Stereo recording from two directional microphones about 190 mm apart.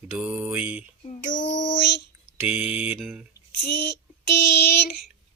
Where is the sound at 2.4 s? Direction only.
5° right (ahead or behind).